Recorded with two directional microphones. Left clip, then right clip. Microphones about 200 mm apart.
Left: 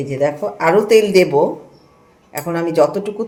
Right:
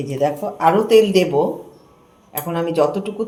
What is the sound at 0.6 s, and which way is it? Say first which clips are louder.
Speech: left 1 dB; 45° left (ahead or behind).